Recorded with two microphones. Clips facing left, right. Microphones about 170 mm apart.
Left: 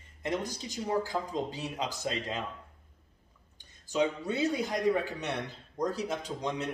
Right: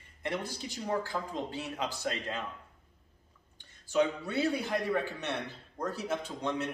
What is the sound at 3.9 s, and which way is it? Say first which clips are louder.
A man's voice: even; 20° left (ahead or behind).